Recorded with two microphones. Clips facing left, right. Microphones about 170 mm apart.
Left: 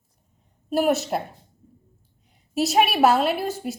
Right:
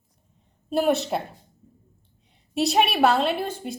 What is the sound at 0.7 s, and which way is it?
Speech, 5° left (ahead or behind).